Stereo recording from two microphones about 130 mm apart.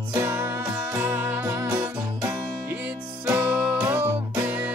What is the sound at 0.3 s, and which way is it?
Music, 20° right (ahead or behind).